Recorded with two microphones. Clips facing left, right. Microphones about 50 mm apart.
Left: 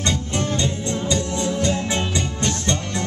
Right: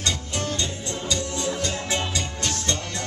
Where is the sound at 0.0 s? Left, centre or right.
Left.